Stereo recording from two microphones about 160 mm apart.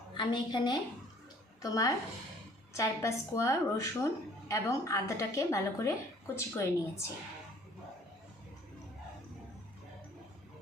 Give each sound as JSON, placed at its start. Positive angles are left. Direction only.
{"t": 0.1, "sound": "a woman's voice", "side_deg": 30}